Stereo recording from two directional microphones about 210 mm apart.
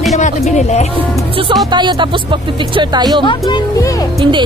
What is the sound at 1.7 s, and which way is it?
Speech, 20° right (ahead or behind).